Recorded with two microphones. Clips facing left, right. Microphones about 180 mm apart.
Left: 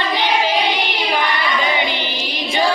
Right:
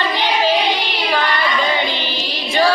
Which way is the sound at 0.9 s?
15° left (ahead or behind).